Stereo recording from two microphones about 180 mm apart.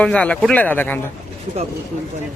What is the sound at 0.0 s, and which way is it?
Speech, 5° left (ahead or behind).